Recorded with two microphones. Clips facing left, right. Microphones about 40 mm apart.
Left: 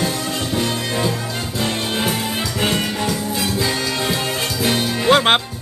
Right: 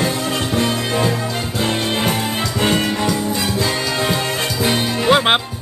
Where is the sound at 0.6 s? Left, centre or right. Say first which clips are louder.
Right 3 dB; centre.